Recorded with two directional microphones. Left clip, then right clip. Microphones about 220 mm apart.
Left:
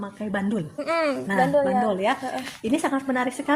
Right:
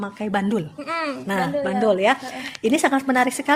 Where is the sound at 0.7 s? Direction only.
15° left (ahead or behind).